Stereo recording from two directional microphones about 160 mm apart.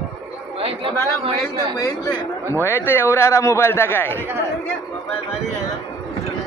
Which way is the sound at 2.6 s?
15° left (ahead or behind).